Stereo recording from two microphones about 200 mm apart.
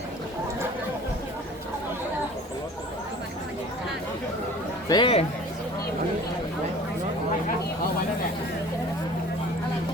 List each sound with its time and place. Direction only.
4.9 s speech: 25° left (ahead or behind)